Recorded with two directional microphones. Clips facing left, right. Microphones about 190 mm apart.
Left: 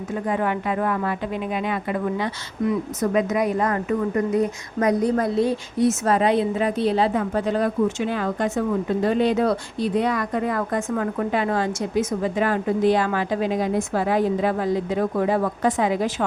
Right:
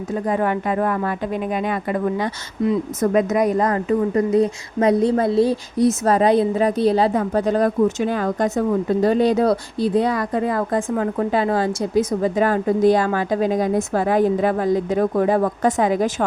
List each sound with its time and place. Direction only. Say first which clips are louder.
0.3 s a woman's voice: right 3 dB; 40° right (ahead or behind)